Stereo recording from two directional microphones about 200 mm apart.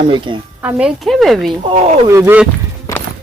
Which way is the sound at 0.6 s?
5° right (ahead or behind).